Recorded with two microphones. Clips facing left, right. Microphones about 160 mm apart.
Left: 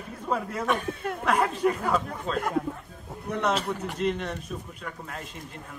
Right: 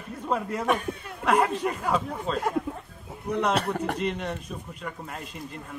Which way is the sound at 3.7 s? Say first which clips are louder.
Right 5 dB; 60° right (ahead or behind).